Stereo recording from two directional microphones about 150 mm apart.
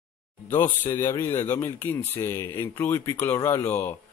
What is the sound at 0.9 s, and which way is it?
Speech, 20° left (ahead or behind).